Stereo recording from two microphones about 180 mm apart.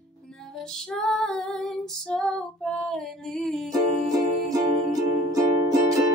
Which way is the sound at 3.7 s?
20° right (ahead or behind).